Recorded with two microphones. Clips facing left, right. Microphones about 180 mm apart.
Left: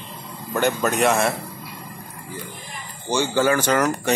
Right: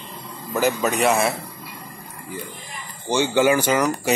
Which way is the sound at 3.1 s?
15° right (ahead or behind).